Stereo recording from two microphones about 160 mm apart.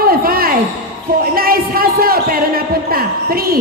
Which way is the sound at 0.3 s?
65° right (ahead or behind).